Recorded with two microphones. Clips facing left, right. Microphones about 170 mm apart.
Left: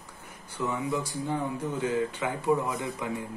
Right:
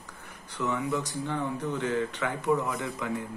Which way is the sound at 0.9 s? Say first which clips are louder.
Left 1 dB; 10° left (ahead or behind).